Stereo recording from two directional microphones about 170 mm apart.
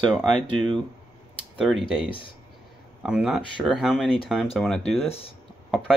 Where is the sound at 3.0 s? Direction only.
5° right (ahead or behind).